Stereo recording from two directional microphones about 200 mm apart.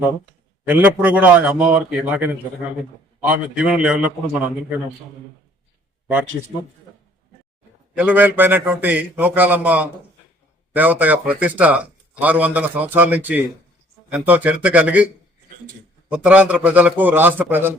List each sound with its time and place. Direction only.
0.6 s a man's voice: 10° right (ahead or behind)
7.9 s a man's voice: 10° right (ahead or behind)
16.0 s a man's voice: 5° right (ahead or behind)